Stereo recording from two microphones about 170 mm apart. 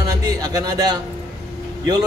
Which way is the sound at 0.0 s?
20° right (ahead or behind).